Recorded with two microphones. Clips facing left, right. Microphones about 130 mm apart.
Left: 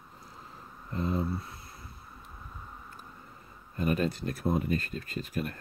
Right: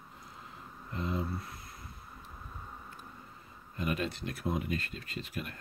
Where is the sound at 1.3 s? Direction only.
25° left (ahead or behind).